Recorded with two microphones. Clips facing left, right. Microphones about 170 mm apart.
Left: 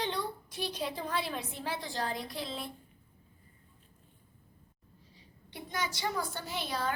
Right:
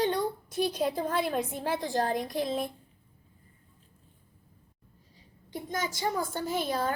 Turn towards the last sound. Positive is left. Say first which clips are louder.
# right 5 dB
turn(degrees=-45)  # may be behind; listen again after turning